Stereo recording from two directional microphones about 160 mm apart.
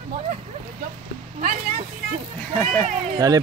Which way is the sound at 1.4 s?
65° right (ahead or behind).